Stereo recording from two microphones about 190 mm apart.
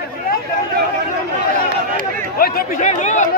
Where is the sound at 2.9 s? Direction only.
40° left (ahead or behind).